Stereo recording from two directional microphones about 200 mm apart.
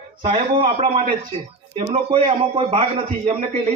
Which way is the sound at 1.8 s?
30° right (ahead or behind).